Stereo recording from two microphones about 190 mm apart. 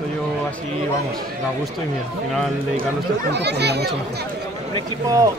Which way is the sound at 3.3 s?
60° right (ahead or behind).